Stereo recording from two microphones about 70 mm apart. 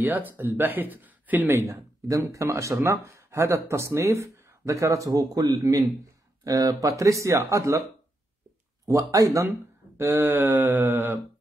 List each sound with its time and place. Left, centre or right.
0.0 s speech: right
2.0 s speech: right
8.8 s speech: right
9.5 s speech: right